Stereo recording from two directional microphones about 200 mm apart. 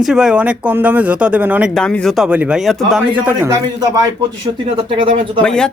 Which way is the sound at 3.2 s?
15° right (ahead or behind).